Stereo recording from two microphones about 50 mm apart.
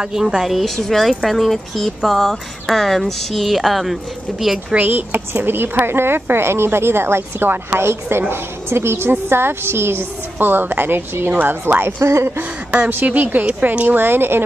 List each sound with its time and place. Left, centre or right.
0.0 s a woman's voice: centre
4.7 s a woman's voice: right
12.0 s speech: right
12.7 s speech: right
13.9 s a woman's voice: right